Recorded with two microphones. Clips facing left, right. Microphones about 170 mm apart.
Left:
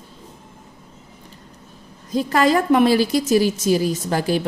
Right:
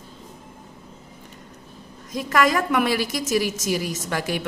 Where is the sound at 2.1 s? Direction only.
30° left (ahead or behind).